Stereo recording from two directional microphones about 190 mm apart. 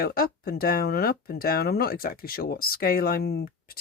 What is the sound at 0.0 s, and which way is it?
Speech, 50° left (ahead or behind).